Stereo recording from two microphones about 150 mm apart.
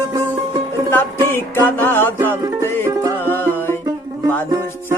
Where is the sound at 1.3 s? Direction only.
15° left (ahead or behind).